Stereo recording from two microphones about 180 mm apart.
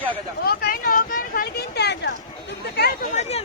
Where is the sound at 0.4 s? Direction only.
55° left (ahead or behind).